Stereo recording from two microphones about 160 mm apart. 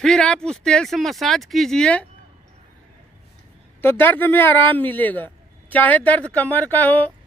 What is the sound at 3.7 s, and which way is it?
Speech, 15° left (ahead or behind).